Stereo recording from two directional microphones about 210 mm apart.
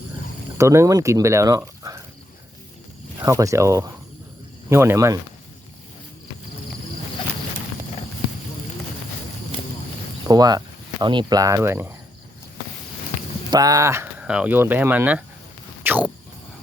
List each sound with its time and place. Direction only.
0.6 s speech: 15° right (ahead or behind)
3.2 s speech: 15° right (ahead or behind)
10.2 s speech: 20° right (ahead or behind)
13.5 s speech: 15° right (ahead or behind)
15.8 s a sound: 10° right (ahead or behind)